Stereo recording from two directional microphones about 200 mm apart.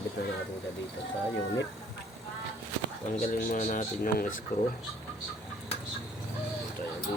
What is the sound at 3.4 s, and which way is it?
Speech, 40° left (ahead or behind).